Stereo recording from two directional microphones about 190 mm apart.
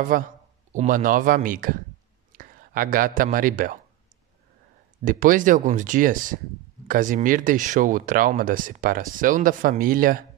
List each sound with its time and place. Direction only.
0.1 s speech: 45° right (ahead or behind)
5.0 s speech: 45° right (ahead or behind)